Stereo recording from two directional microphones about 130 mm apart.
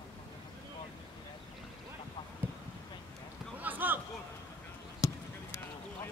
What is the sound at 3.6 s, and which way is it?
Basketball bounce, 15° right (ahead or behind).